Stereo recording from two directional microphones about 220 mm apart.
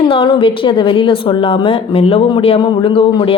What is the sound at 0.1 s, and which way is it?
A woman's voice, 25° left (ahead or behind).